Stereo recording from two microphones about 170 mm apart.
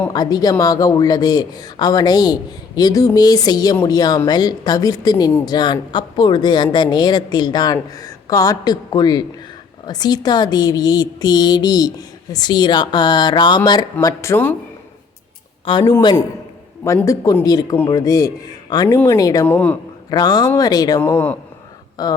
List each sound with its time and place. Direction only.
0.1 s a woman's voice: 25° left (ahead or behind)
15.6 s a woman's voice: 25° left (ahead or behind); by 19.7 s 10° left (ahead or behind)
20.1 s a woman's voice: 20° left (ahead or behind)
21.0 s speech: 10° left (ahead or behind)
22.0 s a woman's voice: 20° left (ahead or behind)